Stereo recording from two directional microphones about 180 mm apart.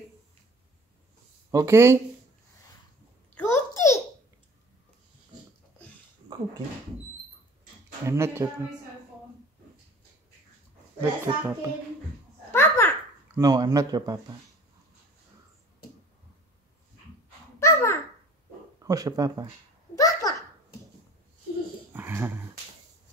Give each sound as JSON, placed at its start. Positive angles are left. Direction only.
{"t": 1.5, "sound": "a child's voice", "side_deg": -15}
{"t": 3.3, "sound": "babbling", "side_deg": 15}
{"t": 8.0, "sound": "a child's voice", "side_deg": -15}
{"t": 11.0, "sound": "a child's voice", "side_deg": -10}
{"t": 12.4, "sound": "babbling", "side_deg": 15}
{"t": 13.3, "sound": "speech", "side_deg": -20}
{"t": 17.6, "sound": "babbling", "side_deg": 15}
{"t": 18.8, "sound": "speech", "side_deg": -20}
{"t": 20.0, "sound": "a sound", "side_deg": 20}
{"t": 21.9, "sound": "a sound", "side_deg": -10}